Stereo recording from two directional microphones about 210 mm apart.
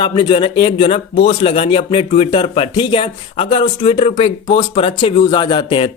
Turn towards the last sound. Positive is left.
turn(degrees=25)  # may be behind; listen again after turning